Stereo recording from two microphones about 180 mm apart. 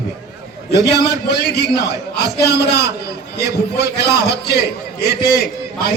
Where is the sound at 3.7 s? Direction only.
65° left (ahead or behind).